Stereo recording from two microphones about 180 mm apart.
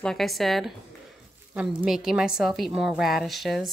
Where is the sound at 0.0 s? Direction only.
Centre (ahead or behind).